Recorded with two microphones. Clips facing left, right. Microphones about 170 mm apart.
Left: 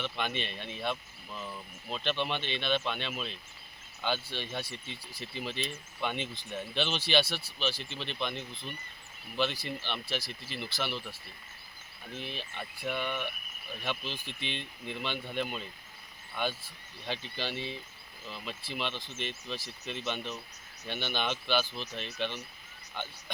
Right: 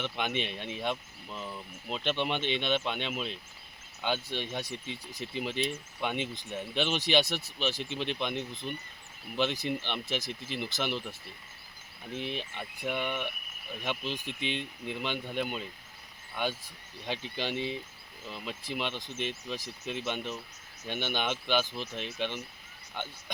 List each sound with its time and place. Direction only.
0.0 s speech: 15° right (ahead or behind)